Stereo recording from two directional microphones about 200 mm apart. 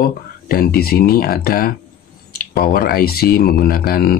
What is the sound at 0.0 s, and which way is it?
Speech, 45° left (ahead or behind).